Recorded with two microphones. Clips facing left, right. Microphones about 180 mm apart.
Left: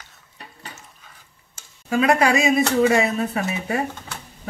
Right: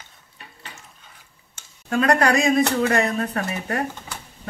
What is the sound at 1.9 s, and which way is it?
Speech, 5° left (ahead or behind).